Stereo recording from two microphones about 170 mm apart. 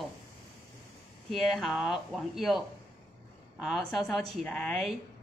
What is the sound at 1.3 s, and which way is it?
A woman's voice, centre (ahead or behind).